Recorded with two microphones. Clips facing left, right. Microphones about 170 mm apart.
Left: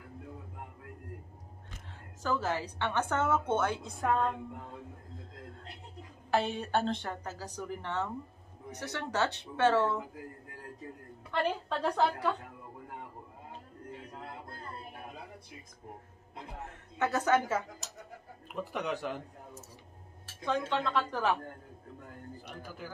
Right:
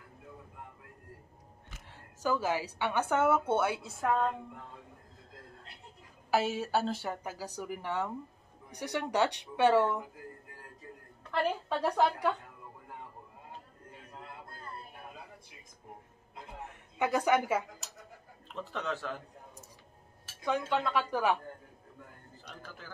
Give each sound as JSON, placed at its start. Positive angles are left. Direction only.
{"t": 2.2, "sound": "a woman's voice", "side_deg": -10}
{"t": 6.3, "sound": "a woman's voice", "side_deg": -5}
{"t": 11.2, "sound": "a woman's voice", "side_deg": -5}
{"t": 17.0, "sound": "a woman's voice", "side_deg": -10}
{"t": 18.5, "sound": "a man's voice", "side_deg": 15}
{"t": 20.4, "sound": "a woman's voice", "side_deg": -10}
{"t": 22.5, "sound": "a man's voice", "side_deg": 15}